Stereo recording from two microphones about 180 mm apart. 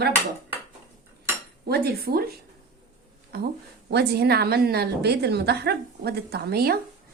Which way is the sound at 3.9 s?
65° right (ahead or behind).